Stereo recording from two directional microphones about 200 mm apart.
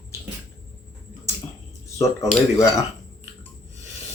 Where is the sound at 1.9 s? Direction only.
15° left (ahead or behind).